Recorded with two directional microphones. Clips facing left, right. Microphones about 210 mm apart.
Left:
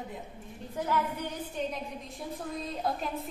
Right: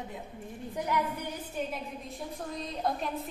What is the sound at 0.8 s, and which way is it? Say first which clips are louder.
Female singing: left 1 dB; 15° right (ahead or behind).